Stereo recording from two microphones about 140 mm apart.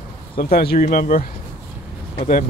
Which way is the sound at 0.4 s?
90° left.